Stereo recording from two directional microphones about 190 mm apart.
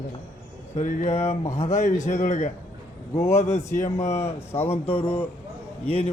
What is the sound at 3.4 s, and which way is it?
A man's voice, 40° left (ahead or behind).